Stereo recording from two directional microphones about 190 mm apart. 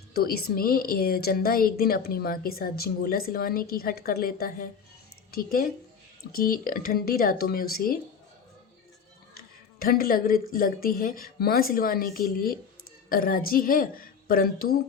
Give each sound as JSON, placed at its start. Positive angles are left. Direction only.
{"t": 0.1, "sound": "a woman's voice", "side_deg": 55}
{"t": 9.7, "sound": "a woman's voice", "side_deg": 50}